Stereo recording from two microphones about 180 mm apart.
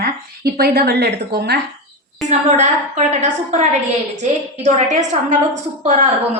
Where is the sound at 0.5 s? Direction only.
60° right (ahead or behind).